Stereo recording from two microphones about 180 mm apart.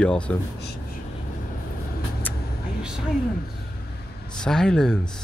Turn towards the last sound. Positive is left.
turn(degrees=5)  # may be behind; listen again after turning